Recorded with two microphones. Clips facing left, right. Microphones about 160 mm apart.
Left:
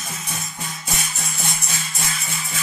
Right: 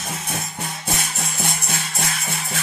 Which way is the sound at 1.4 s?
55° right (ahead or behind).